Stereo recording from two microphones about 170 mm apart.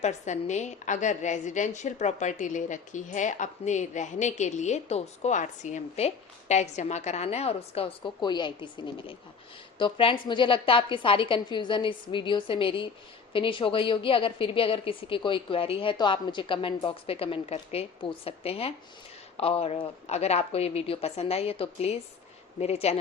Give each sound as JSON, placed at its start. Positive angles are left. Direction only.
{"t": 0.0, "sound": "a woman's voice", "side_deg": 45}